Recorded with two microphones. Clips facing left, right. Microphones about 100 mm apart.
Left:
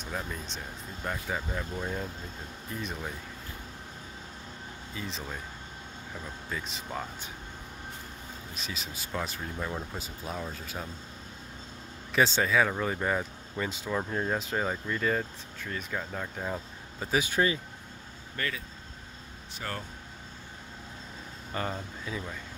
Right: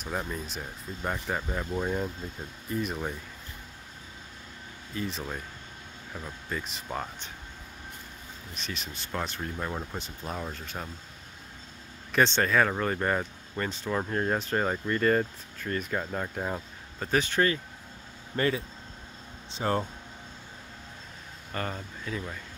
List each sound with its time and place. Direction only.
1.2 s speech: centre (ahead or behind)
1.6 s speech: 10° right (ahead or behind)
4.9 s speech: centre (ahead or behind)
6.5 s speech: centre (ahead or behind)
8.5 s speech: centre (ahead or behind)
12.1 s speech: 5° left (ahead or behind); by 16.6 s 15° right (ahead or behind)
17.0 s speech: 10° left (ahead or behind)
18.3 s speech: 30° right (ahead or behind)
21.5 s speech: 15° left (ahead or behind)